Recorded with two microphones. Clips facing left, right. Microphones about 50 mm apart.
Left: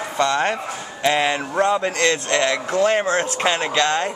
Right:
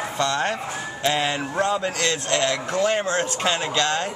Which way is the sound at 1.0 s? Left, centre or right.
Centre.